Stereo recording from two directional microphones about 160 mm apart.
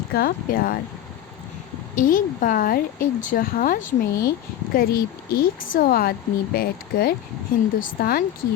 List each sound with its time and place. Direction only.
0.1 s speech: 70° left (ahead or behind)
2.0 s speech: 55° left (ahead or behind)